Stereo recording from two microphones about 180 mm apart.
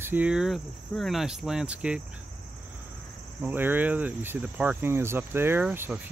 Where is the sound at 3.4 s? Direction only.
10° right (ahead or behind).